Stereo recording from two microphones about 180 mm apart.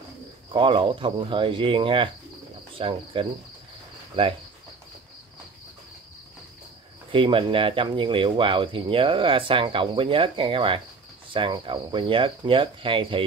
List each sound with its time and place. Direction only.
0.5 s speech: 30° right (ahead or behind)
7.1 s speech: 30° right (ahead or behind)